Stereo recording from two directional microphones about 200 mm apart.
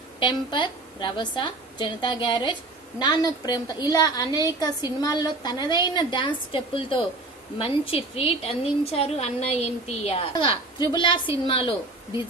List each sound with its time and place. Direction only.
0.2 s a woman's voice: 25° left (ahead or behind)